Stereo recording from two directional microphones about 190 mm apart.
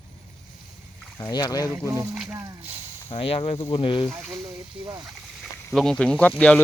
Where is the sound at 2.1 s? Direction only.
5° right (ahead or behind).